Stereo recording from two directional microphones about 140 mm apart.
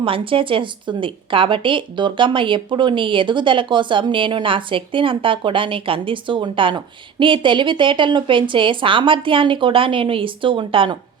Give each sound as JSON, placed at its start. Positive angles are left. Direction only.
{"t": 0.0, "sound": "speech", "side_deg": -40}